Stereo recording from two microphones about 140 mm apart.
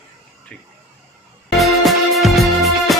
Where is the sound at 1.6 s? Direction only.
Centre (ahead or behind).